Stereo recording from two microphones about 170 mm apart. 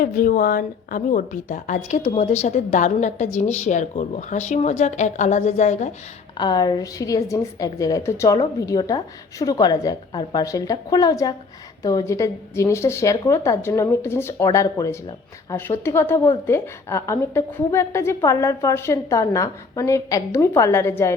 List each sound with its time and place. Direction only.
0.0 s speech: 55° left (ahead or behind)
6.3 s a woman's voice: 25° left (ahead or behind)